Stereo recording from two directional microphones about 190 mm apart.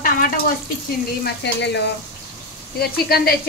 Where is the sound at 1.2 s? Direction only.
65° left (ahead or behind).